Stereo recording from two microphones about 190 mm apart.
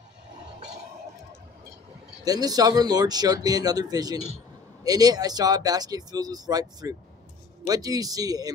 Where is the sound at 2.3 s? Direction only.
20° right (ahead or behind).